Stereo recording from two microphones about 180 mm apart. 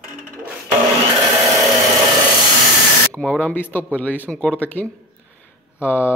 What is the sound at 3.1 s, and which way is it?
Speech, 5° left (ahead or behind).